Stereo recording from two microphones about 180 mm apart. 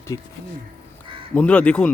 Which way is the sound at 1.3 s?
5° left (ahead or behind).